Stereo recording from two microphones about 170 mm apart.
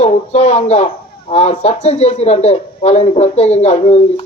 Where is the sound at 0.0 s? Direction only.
40° left (ahead or behind).